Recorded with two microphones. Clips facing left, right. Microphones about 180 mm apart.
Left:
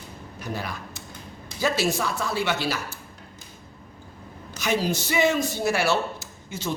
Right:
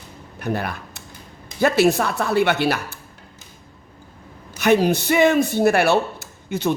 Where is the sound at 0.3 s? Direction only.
60° right (ahead or behind).